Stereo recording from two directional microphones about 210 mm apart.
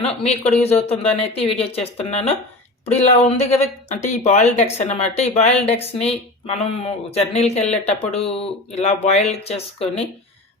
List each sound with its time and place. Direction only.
0.0 s a woman's voice: 30° left (ahead or behind)